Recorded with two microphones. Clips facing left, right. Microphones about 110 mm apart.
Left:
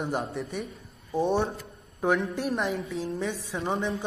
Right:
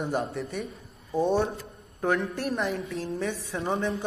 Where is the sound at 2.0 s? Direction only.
5° left (ahead or behind).